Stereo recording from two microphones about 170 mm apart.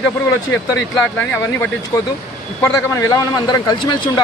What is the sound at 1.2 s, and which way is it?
A man's voice, 10° left (ahead or behind).